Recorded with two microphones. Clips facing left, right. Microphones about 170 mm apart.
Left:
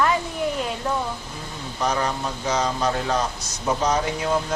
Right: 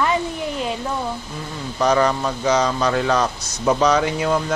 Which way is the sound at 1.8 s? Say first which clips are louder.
Right 7 dB; 90° right.